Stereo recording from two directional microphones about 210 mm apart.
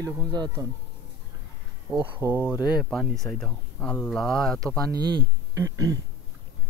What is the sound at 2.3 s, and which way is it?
Speech, 5° right (ahead or behind).